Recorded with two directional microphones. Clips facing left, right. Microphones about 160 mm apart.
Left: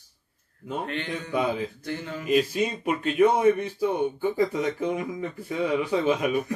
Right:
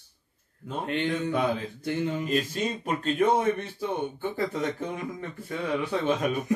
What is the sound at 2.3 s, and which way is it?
Speech, 10° left (ahead or behind).